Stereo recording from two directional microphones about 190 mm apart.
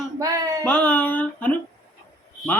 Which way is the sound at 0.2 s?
20° right (ahead or behind).